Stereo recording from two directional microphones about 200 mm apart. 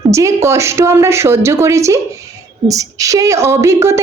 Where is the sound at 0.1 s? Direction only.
15° right (ahead or behind).